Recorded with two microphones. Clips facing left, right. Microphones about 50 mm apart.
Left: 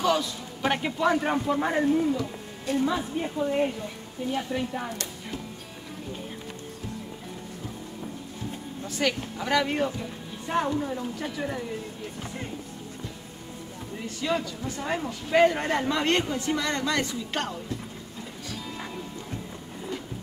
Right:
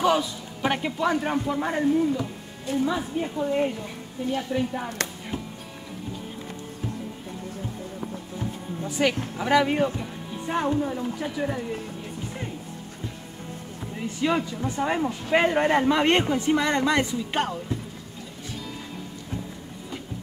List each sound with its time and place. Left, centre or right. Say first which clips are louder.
0.0 s a man's voice: right 3 dB; centre
0.7 s speech: even; centre
8.8 s speech: right 3 dB; centre
14.0 s a woman's voice: right 4 dB; right